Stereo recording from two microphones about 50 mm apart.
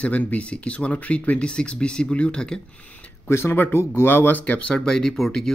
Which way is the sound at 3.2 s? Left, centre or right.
Left.